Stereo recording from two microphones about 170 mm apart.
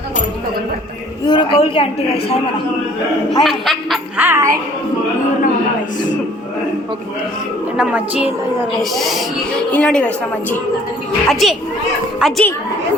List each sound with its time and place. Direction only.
1.3 s a man's voice: 30° left (ahead or behind)
3.4 s speech: centre (ahead or behind)
4.2 s a woman's voice: 15° right (ahead or behind)
7.8 s a woman's voice: 5° right (ahead or behind)
11.3 s a woman's voice: centre (ahead or behind)